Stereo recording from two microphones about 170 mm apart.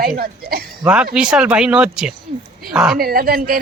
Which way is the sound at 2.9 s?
60° right (ahead or behind).